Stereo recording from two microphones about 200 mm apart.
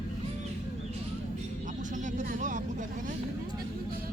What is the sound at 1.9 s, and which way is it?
Vehicle, 40° right (ahead or behind).